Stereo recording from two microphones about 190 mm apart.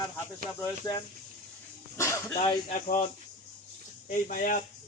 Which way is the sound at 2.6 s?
45° left (ahead or behind).